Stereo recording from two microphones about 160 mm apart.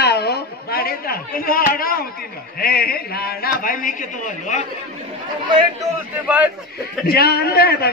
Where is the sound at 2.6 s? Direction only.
70° left (ahead or behind); by 4.6 s 50° left (ahead or behind).